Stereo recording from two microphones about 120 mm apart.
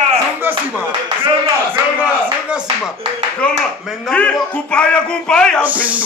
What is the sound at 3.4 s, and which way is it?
Speech, 10° left (ahead or behind).